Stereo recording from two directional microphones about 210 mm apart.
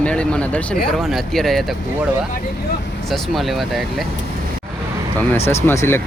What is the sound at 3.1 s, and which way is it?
Speech, centre (ahead or behind).